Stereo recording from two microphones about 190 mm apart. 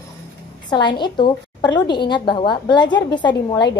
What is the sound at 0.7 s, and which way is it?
A woman's voice, 25° left (ahead or behind).